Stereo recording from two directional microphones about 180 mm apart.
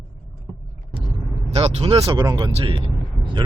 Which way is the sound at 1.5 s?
35° right (ahead or behind).